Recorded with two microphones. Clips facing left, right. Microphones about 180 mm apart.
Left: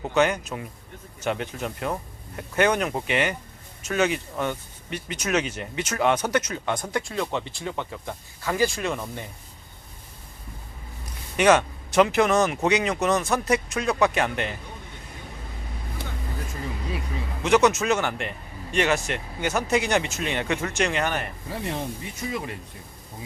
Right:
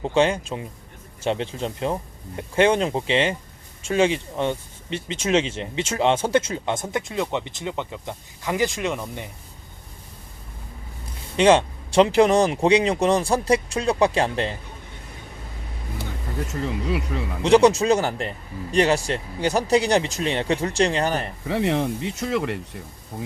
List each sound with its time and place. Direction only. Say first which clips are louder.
0.0 s speech: right 2 dB; 25° right (ahead or behind)
11.3 s a man's voice: right 3 dB; 30° right (ahead or behind)
17.4 s a man's voice: right 4 dB; 30° right (ahead or behind)
21.4 s speech: right 8 dB; 70° right (ahead or behind)